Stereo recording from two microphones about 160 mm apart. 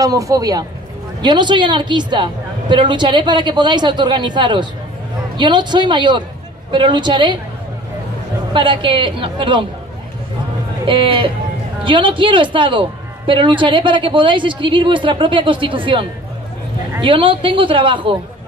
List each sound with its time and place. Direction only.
0.0 s a woman's voice: 20° right (ahead or behind)
8.5 s a woman's voice: 30° right (ahead or behind)
10.9 s a woman's voice: 30° right (ahead or behind)